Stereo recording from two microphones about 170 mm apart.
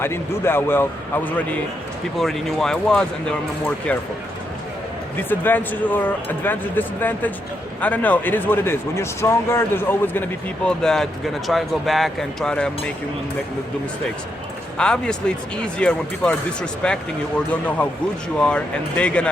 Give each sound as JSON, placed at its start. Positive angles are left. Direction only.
{"t": 0.0, "sound": "speech", "side_deg": 15}
{"t": 2.1, "sound": "speech", "side_deg": 0}
{"t": 5.3, "sound": "speech", "side_deg": 10}
{"t": 14.8, "sound": "speech", "side_deg": 5}